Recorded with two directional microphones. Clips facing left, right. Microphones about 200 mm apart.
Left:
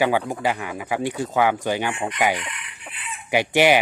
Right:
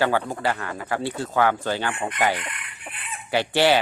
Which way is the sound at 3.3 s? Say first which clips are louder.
Left 2 dB; 15° left (ahead or behind).